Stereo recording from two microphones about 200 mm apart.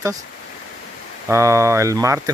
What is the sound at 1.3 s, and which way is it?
Speech, 15° right (ahead or behind).